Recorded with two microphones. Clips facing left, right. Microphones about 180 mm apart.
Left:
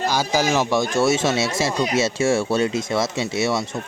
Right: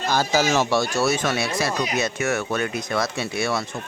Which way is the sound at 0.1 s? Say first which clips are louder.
Right 3 dB; 10° left (ahead or behind).